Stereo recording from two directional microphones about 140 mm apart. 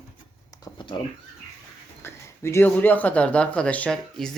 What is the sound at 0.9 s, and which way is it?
Speech, 35° left (ahead or behind).